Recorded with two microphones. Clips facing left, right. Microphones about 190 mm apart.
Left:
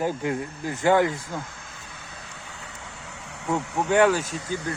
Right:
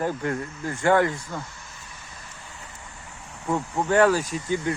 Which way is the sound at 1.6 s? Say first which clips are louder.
Left 2 dB; 60° left (ahead or behind).